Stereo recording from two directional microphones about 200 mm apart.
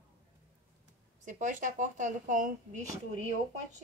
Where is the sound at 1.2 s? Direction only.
40° right (ahead or behind).